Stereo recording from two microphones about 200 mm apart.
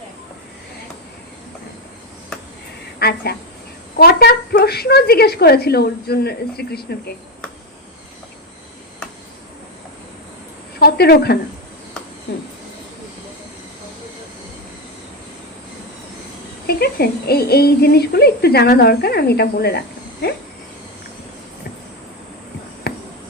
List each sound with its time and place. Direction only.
3.0 s speech: 50° left (ahead or behind)
10.8 s speech: 50° left (ahead or behind)
16.6 s speech: 50° left (ahead or behind)